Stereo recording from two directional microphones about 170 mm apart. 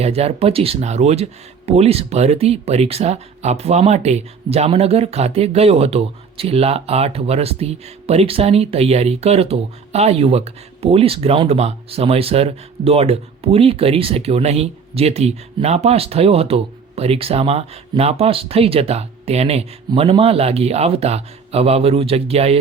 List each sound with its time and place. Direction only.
0.0 s speech: 35° right (ahead or behind)